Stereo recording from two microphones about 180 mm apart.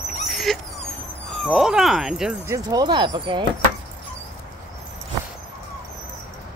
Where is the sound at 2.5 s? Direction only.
20° right (ahead or behind).